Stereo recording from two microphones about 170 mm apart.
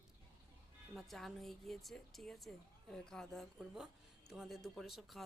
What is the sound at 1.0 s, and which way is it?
Speech, centre (ahead or behind).